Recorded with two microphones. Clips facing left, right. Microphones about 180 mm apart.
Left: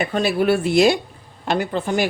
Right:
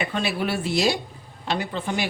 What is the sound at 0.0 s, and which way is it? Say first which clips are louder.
A woman's voice: left 7 dB; 40° left (ahead or behind).